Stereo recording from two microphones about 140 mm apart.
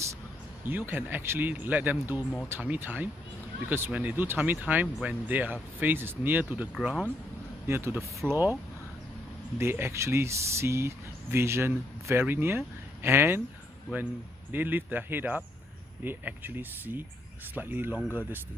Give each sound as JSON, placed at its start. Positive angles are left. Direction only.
{"t": 0.7, "sound": "speech", "side_deg": -15}
{"t": 9.6, "sound": "speech", "side_deg": -15}
{"t": 14.5, "sound": "speech", "side_deg": -15}